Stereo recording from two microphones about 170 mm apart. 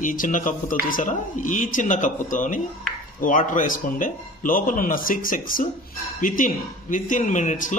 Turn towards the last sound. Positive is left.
turn(degrees=45)  # may be behind; listen again after turning